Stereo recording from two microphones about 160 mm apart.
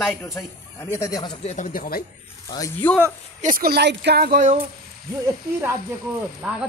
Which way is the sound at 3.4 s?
55° right (ahead or behind).